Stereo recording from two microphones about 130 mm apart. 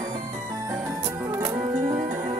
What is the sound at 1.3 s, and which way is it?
Music, 25° right (ahead or behind).